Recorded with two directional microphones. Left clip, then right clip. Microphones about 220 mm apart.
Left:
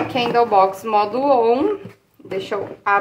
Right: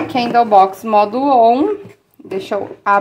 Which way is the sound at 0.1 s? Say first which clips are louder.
Right 5 dB; 40° right (ahead or behind).